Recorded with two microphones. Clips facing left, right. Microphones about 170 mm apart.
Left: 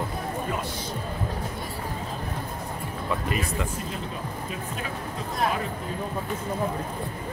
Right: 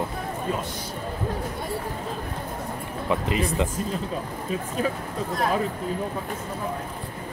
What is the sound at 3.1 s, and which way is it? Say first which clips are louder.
Speech: right 4 dB; 20° right (ahead or behind).